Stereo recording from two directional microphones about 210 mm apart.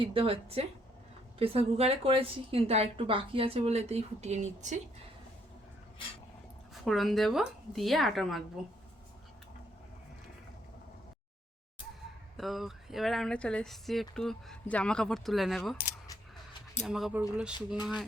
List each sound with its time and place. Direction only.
0.0 s a woman's voice: 25° right (ahead or behind)
6.8 s speech: centre (ahead or behind)
12.4 s speech: centre (ahead or behind)
16.8 s speech: centre (ahead or behind)